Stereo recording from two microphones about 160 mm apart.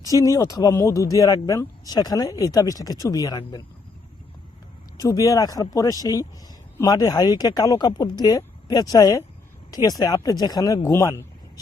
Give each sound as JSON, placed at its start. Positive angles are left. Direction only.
{"t": 0.1, "sound": "speech", "side_deg": 20}
{"t": 4.9, "sound": "speech", "side_deg": 20}
{"t": 11.0, "sound": "a sound", "side_deg": 20}